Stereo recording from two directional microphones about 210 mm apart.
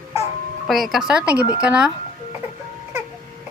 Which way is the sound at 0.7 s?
Centre (ahead or behind).